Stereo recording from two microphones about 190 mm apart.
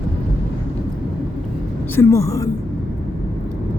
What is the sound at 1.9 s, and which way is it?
Speech, 15° left (ahead or behind).